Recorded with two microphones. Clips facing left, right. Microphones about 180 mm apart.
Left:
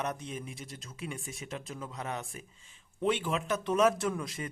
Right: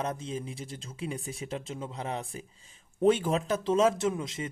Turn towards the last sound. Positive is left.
turn(degrees=-20)  # may be behind; listen again after turning